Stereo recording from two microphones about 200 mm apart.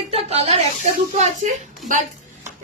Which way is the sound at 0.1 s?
30° right (ahead or behind).